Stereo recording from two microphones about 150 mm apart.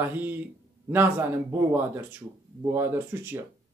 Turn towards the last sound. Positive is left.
turn(degrees=-15)  # may be behind; listen again after turning